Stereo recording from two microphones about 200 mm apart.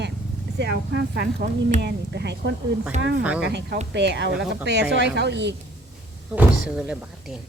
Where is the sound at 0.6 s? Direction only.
55° right (ahead or behind).